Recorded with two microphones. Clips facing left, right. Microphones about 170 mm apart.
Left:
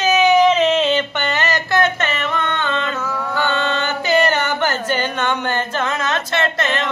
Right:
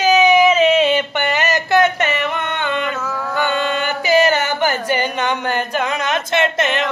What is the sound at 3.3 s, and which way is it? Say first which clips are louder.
Chant: right 1 dB; 15° right (ahead or behind).